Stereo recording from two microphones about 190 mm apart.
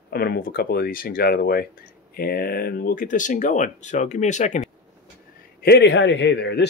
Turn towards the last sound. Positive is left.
turn(degrees=65)  # may be behind; listen again after turning